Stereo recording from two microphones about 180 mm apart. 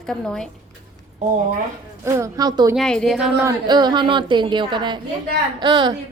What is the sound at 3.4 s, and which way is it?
A woman's voice, 25° right (ahead or behind).